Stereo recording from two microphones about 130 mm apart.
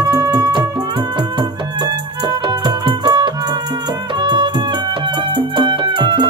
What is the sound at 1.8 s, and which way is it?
Music, 35° right (ahead or behind).